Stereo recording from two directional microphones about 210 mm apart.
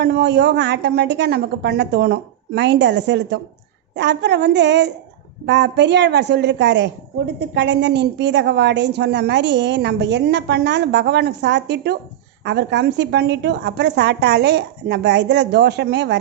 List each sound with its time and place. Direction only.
0.0 s a woman's voice: 50° right (ahead or behind)